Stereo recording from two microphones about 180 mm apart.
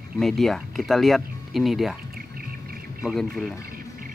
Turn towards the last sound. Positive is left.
turn(degrees=0)  # may be behind; listen again after turning